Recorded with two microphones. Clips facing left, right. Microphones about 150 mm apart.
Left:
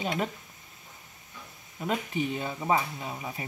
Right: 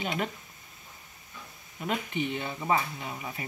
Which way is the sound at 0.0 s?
35° left (ahead or behind).